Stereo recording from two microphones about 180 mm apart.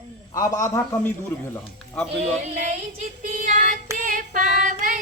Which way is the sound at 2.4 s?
40° right (ahead or behind).